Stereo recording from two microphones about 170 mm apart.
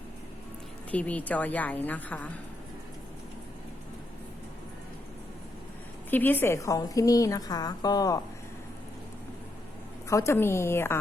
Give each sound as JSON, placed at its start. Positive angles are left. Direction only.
{"t": 0.9, "sound": "a woman's voice", "side_deg": 10}
{"t": 6.1, "sound": "a woman's voice", "side_deg": 10}
{"t": 10.1, "sound": "a woman's voice", "side_deg": 15}